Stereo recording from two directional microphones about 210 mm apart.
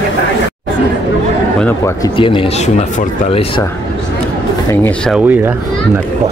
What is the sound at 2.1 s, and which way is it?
Speech, 25° left (ahead or behind).